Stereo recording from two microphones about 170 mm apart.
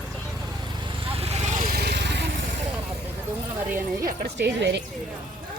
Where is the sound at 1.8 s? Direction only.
75° right (ahead or behind).